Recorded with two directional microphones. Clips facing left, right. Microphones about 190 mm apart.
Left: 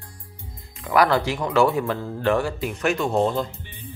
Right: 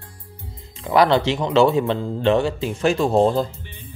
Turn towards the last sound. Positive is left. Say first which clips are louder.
# right 4 dB
turn(degrees=-35)  # may be behind; listen again after turning